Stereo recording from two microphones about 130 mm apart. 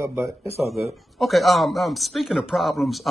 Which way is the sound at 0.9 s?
Centre (ahead or behind).